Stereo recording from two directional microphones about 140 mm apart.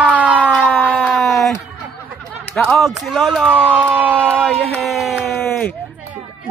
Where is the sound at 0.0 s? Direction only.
10° right (ahead or behind).